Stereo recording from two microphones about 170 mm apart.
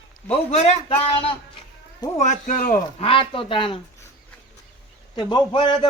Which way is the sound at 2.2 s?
50° left (ahead or behind).